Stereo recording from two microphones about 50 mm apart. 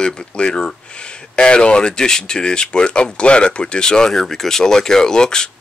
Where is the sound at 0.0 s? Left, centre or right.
Centre.